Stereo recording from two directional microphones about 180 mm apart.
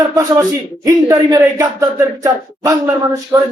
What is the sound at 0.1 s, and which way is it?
A man's voice, 15° right (ahead or behind).